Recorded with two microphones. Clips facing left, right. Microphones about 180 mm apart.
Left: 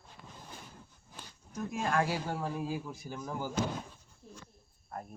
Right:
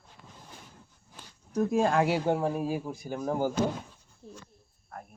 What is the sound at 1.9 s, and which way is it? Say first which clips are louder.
Speech: right 6 dB; 20° right (ahead or behind).